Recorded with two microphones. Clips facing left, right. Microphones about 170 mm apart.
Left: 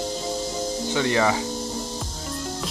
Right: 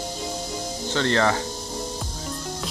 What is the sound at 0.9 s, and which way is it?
Speech, 10° left (ahead or behind).